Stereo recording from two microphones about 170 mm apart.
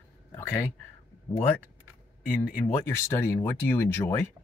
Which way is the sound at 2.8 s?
15° left (ahead or behind).